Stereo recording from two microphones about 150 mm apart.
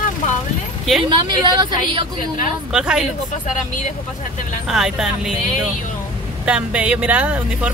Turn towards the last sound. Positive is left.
turn(degrees=-10)  # may be behind; listen again after turning